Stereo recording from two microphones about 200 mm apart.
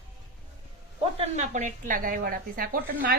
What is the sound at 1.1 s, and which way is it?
Speech, 35° right (ahead or behind).